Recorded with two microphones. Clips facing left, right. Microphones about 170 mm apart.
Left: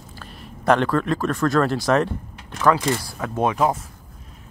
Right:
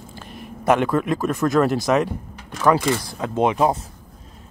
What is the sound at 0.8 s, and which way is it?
Speech, 15° right (ahead or behind).